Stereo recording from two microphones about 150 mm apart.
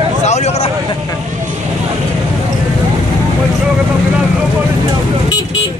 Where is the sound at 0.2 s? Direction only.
50° left (ahead or behind).